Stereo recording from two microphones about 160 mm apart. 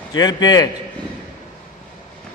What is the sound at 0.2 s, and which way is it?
Speech, 25° left (ahead or behind).